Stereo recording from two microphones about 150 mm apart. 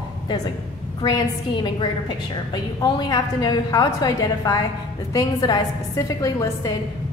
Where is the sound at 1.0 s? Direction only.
30° left (ahead or behind).